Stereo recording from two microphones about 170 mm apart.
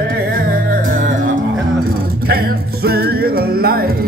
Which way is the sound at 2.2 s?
65° right (ahead or behind).